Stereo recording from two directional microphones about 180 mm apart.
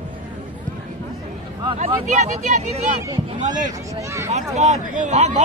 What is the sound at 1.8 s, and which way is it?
Speech, 40° right (ahead or behind).